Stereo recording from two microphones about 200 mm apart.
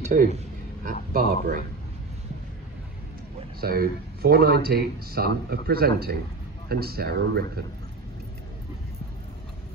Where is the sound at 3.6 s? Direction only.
50° right (ahead or behind).